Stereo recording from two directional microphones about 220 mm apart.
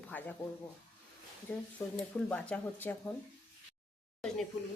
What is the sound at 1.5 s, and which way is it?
Speech, 10° left (ahead or behind).